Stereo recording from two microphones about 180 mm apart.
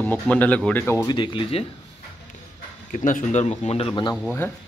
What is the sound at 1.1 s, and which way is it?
Speech, 25° left (ahead or behind).